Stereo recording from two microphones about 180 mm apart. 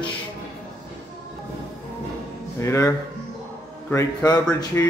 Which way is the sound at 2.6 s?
15° left (ahead or behind).